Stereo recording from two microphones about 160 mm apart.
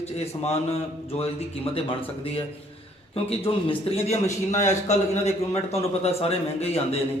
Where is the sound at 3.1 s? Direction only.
35° left (ahead or behind).